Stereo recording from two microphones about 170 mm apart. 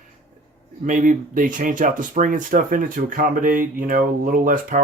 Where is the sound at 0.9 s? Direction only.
50° right (ahead or behind).